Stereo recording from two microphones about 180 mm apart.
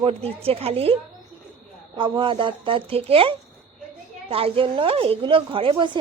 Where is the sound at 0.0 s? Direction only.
35° right (ahead or behind).